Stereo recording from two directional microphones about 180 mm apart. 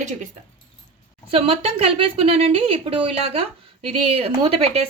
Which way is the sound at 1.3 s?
30° right (ahead or behind).